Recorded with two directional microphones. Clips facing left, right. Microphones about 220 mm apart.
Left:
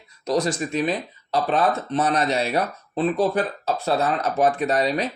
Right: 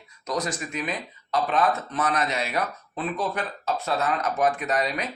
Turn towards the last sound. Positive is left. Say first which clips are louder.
# left 5 dB
turn(degrees=30)  # may be behind; listen again after turning